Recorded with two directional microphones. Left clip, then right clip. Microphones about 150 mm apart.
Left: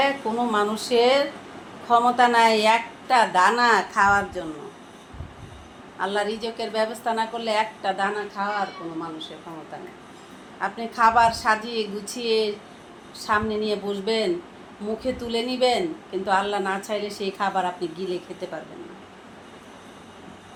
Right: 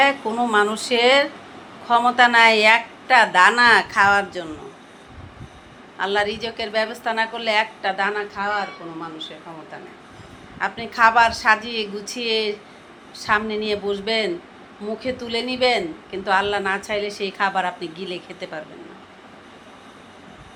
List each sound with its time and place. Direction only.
0.0 s a woman's voice: 30° right (ahead or behind)
6.0 s a woman's voice: 20° right (ahead or behind)
10.6 s a woman's voice: 25° right (ahead or behind)